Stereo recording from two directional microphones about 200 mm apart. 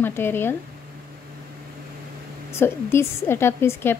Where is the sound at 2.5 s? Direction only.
10° left (ahead or behind).